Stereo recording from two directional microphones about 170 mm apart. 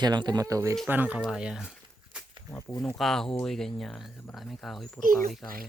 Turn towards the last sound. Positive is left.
turn(degrees=-55)  # may be behind; listen again after turning